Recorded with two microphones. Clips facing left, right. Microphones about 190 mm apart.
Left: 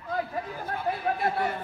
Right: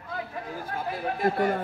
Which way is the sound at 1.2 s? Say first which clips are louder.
Right 4 dB; 45° right (ahead or behind).